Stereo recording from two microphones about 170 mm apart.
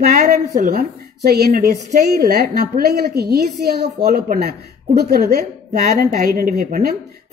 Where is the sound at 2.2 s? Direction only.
65° right (ahead or behind).